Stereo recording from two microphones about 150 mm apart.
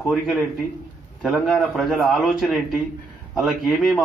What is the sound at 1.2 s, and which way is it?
A man's voice, centre (ahead or behind).